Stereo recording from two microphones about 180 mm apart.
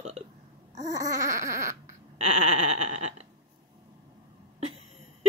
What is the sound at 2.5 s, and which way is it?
Sheep, 40° right (ahead or behind).